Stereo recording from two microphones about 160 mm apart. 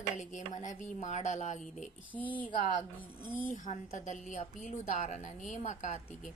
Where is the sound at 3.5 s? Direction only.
50° left (ahead or behind).